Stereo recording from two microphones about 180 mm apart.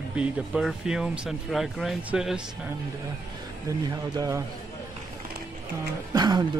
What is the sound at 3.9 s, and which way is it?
Speech, 20° right (ahead or behind).